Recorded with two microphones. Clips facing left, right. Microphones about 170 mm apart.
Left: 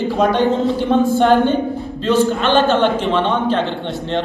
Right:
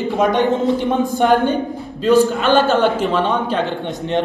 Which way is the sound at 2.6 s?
40° right (ahead or behind).